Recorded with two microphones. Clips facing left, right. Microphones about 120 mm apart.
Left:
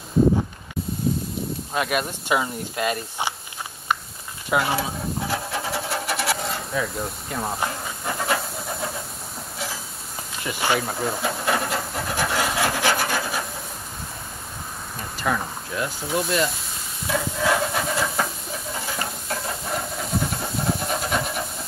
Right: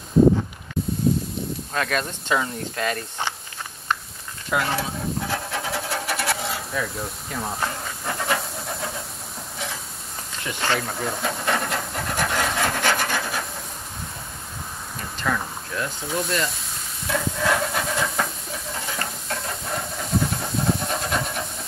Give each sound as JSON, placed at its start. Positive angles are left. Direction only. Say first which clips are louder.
{"t": 1.7, "sound": "speech", "louder": "left 2 dB", "side_deg": 15}
{"t": 4.5, "sound": "stir", "louder": "left 2 dB", "side_deg": 10}
{"t": 4.7, "sound": "filing", "louder": "even", "side_deg": 5}
{"t": 7.6, "sound": "hiss", "louder": "left 1 dB", "side_deg": 5}
{"t": 10.4, "sound": "pant", "louder": "left 2 dB", "side_deg": 10}
{"t": 15.1, "sound": "speech", "louder": "left 1 dB", "side_deg": 15}
{"t": 16.1, "sound": "speech", "louder": "left 3 dB", "side_deg": 5}
{"t": 17.1, "sound": "hiss", "louder": "left 1 dB", "side_deg": 5}
{"t": 19.2, "sound": "steam", "louder": "left 1 dB", "side_deg": 5}